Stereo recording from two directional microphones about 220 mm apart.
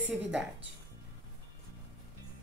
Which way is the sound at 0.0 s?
5° right (ahead or behind).